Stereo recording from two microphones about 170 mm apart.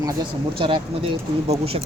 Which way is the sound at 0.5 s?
30° right (ahead or behind).